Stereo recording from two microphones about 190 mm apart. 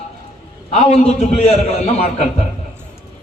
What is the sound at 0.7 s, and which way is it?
A man's voice, 30° left (ahead or behind).